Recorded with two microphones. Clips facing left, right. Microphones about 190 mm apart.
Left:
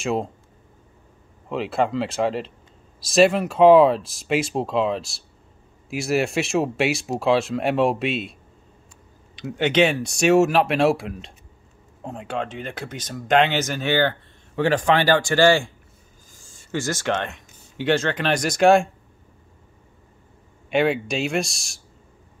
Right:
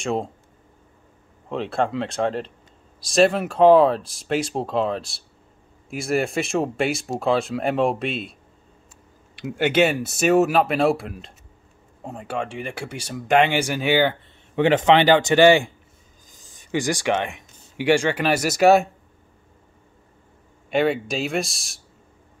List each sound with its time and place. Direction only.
0.0 s speech: centre (ahead or behind)
1.5 s speech: centre (ahead or behind)
20.7 s speech: centre (ahead or behind)